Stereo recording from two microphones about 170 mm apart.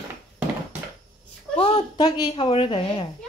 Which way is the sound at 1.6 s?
30° left (ahead or behind).